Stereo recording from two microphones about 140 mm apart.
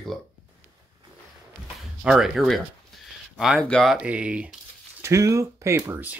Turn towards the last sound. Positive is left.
turn(degrees=-10)  # may be behind; listen again after turning